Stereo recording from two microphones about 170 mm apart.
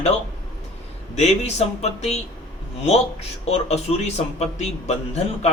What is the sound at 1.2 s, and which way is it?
A man's voice, 40° left (ahead or behind).